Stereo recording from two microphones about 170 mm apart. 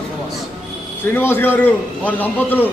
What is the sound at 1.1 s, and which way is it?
A man's voice, 10° left (ahead or behind).